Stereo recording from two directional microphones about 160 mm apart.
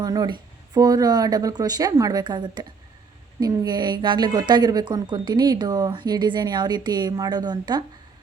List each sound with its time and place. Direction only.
0.0 s a woman's voice: 25° right (ahead or behind)